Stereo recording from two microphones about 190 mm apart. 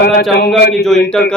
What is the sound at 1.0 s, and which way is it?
Speech, 5° left (ahead or behind).